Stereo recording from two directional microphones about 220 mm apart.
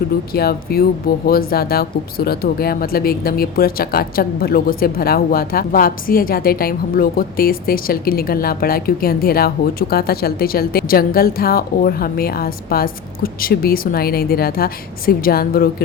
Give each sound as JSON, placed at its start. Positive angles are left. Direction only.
{"t": 0.3, "sound": "speech", "side_deg": 45}